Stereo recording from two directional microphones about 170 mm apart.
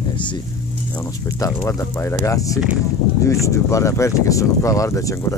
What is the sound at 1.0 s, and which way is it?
Speech, 15° left (ahead or behind).